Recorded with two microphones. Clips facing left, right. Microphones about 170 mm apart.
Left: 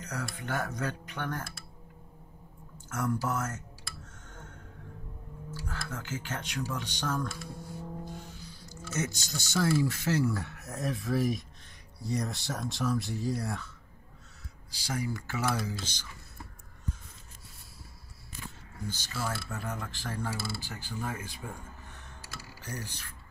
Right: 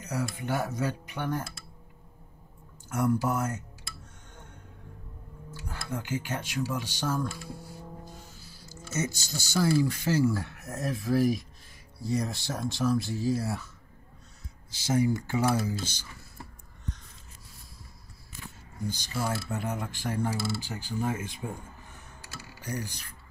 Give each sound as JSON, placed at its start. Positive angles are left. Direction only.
{"t": 0.0, "sound": "speech", "side_deg": -10}
{"t": 2.9, "sound": "speech", "side_deg": -10}
{"t": 5.7, "sound": "speech", "side_deg": -15}
{"t": 14.7, "sound": "speech", "side_deg": -20}
{"t": 18.9, "sound": "speech", "side_deg": -15}
{"t": 22.6, "sound": "mechanisms", "side_deg": -15}